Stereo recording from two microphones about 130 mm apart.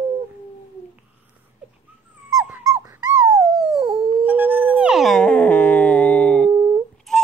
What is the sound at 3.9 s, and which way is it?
Dog, 40° right (ahead or behind).